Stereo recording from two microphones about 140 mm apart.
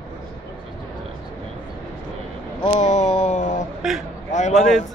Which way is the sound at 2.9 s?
55° left (ahead or behind).